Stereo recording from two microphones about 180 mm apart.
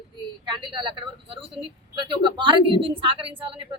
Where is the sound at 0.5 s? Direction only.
30° right (ahead or behind).